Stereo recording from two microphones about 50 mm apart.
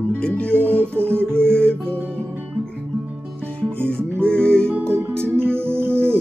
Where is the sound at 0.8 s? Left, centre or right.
Right.